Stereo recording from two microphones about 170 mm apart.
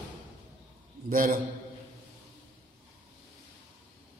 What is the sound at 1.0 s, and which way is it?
Speech, 55° right (ahead or behind).